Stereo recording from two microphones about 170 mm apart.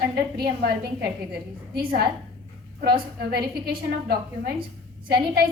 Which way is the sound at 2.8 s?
65° right (ahead or behind).